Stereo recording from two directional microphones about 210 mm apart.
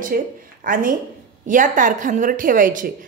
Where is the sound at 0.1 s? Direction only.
45° right (ahead or behind).